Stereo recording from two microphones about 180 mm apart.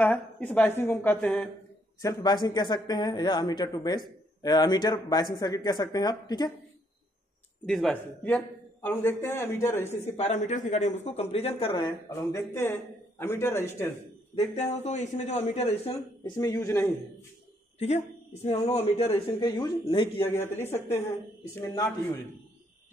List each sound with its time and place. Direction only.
0.0 s a man's voice: 10° left (ahead or behind)
2.0 s speech: 20° left (ahead or behind)
7.6 s a man's voice: centre (ahead or behind)
10.1 s speech: 40° left (ahead or behind)
12.1 s a man's voice: 15° left (ahead or behind)
14.3 s speech: 40° left (ahead or behind)
16.3 s a man's voice: 15° left (ahead or behind)
17.7 s speech: 40° left (ahead or behind)
20.2 s a man's voice: 10° left (ahead or behind)